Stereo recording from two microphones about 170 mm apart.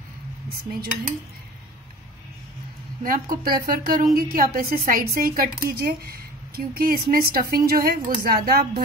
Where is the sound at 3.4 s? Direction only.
60° right (ahead or behind).